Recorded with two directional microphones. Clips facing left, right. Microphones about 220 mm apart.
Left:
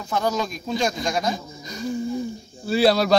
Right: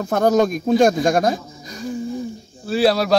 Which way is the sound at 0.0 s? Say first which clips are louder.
Right 8 dB; 55° right (ahead or behind).